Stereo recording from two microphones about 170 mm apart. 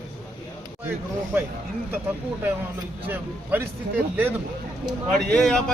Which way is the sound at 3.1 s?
10° right (ahead or behind).